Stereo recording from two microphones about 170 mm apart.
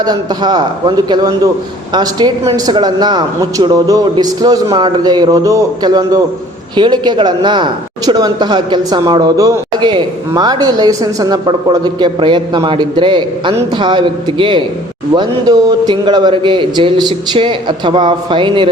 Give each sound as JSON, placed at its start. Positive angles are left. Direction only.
{"t": 0.0, "sound": "speech", "side_deg": -25}